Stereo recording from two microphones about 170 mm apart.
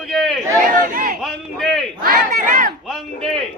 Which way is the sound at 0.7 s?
55° right (ahead or behind).